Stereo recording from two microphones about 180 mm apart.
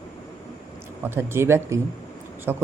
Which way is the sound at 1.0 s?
15° right (ahead or behind).